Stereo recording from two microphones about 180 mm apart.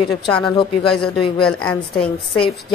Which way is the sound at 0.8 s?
5° left (ahead or behind).